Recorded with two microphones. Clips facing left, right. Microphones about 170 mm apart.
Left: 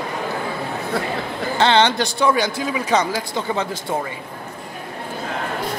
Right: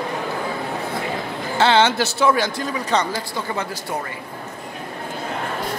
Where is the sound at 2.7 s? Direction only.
10° left (ahead or behind).